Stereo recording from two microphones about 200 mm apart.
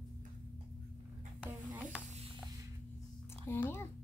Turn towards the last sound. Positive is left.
turn(degrees=10)  # may be behind; listen again after turning